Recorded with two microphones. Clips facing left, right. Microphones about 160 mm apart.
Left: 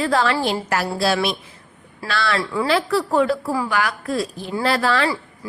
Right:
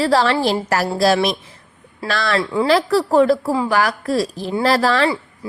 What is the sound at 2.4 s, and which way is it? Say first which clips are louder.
Speech: right 4 dB; 25° right (ahead or behind).